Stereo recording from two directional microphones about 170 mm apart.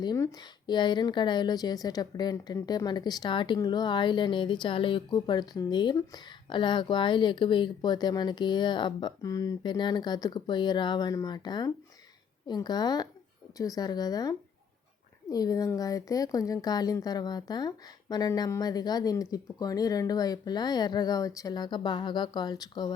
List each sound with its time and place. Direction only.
0.0 s speech: 20° left (ahead or behind)